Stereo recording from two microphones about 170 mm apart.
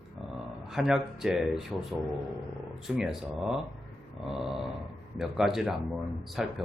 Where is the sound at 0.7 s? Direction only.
Centre (ahead or behind).